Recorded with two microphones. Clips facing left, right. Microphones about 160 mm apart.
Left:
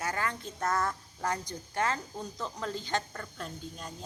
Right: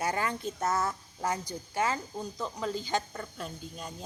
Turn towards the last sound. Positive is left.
turn(degrees=-5)  # may be behind; listen again after turning